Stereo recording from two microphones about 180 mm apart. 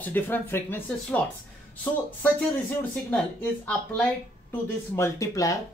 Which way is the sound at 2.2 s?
10° left (ahead or behind).